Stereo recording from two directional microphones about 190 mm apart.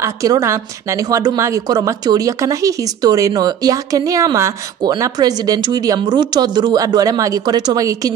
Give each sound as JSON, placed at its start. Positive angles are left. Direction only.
{"t": 0.0, "sound": "a woman's voice", "side_deg": -15}